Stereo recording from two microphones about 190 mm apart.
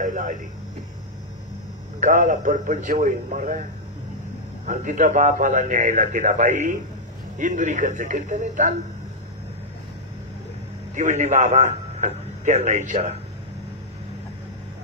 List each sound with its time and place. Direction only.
0.0 s a sound: 40° right (ahead or behind)
2.0 s a man's voice: 40° right (ahead or behind)
4.6 s a man's voice: 40° right (ahead or behind)
11.0 s a man's voice: 40° right (ahead or behind)